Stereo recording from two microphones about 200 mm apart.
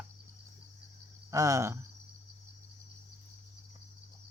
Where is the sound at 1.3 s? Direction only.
15° right (ahead or behind).